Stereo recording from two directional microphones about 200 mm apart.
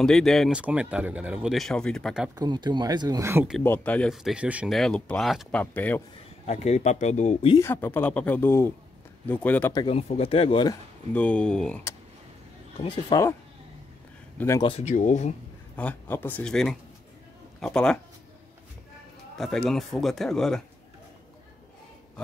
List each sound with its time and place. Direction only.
0.0 s speech: centre (ahead or behind)
2.3 s speech: 20° right (ahead or behind)
3.5 s speech: 10° left (ahead or behind)
6.4 s speech: 35° left (ahead or behind)
7.5 s speech: 10° left (ahead or behind)
9.7 s speech: 25° left (ahead or behind)
11.1 s speech: 5° left (ahead or behind)
12.8 s speech: 20° left (ahead or behind)
14.4 s speech: 15° left (ahead or behind)
14.7 s speech: 35° left (ahead or behind)
15.7 s speech: 10° left (ahead or behind)
19.3 s speech: centre (ahead or behind)